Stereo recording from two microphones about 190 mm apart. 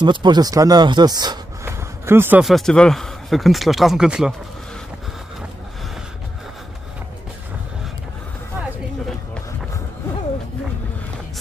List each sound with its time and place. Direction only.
0.0 s speech: 25° right (ahead or behind)
2.4 s speech: centre (ahead or behind)